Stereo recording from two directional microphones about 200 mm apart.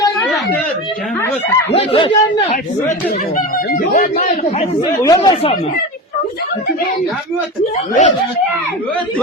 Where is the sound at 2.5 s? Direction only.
45° left (ahead or behind).